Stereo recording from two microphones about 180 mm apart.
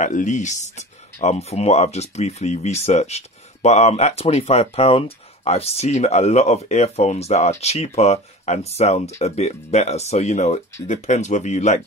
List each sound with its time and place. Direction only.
0.0 s speech: 40° left (ahead or behind)